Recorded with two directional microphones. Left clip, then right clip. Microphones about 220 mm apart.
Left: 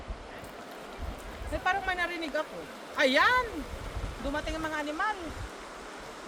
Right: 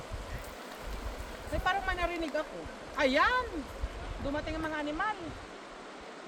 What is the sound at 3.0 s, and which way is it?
Speech, 45° left (ahead or behind).